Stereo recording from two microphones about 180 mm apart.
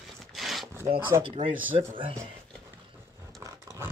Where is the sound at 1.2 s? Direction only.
30° right (ahead or behind).